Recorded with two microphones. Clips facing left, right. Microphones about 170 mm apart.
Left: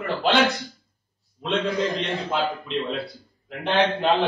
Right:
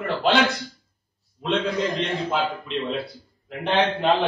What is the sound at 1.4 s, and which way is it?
A man's voice, centre (ahead or behind).